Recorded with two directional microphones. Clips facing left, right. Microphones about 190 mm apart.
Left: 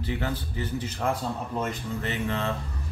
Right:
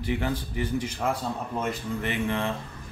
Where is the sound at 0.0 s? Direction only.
15° right (ahead or behind).